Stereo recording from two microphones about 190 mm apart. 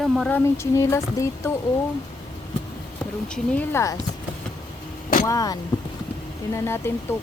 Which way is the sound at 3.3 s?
10° left (ahead or behind).